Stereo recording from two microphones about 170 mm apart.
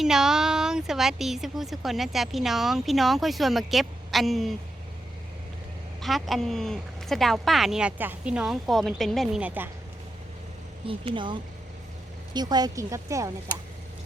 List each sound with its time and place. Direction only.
0.0 s a woman's voice: 5° right (ahead or behind)
6.0 s a woman's voice: centre (ahead or behind)
10.8 s speech: 30° right (ahead or behind)